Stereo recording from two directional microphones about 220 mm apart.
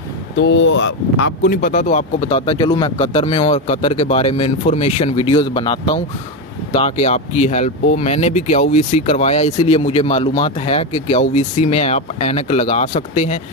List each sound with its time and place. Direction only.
0.4 s speech: 55° left (ahead or behind); by 13.4 s 30° left (ahead or behind)